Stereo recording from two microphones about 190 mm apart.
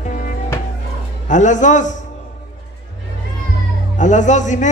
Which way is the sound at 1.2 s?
40° left (ahead or behind).